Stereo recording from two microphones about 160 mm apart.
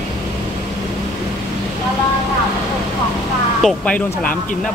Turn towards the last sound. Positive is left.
turn(degrees=10)  # may be behind; listen again after turning